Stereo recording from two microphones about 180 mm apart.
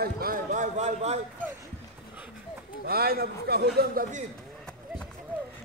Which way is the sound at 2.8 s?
60° right (ahead or behind).